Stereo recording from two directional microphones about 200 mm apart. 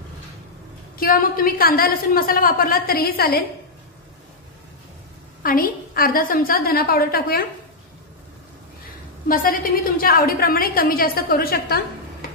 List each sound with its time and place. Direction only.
0.9 s a woman's voice: 45° left (ahead or behind)
5.4 s a woman's voice: 45° left (ahead or behind)
9.3 s a woman's voice: 45° left (ahead or behind)